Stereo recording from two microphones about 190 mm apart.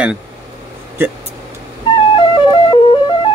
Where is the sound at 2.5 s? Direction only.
25° left (ahead or behind).